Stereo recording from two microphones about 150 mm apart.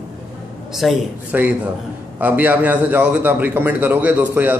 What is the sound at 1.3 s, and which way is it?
A man's voice, 10° right (ahead or behind).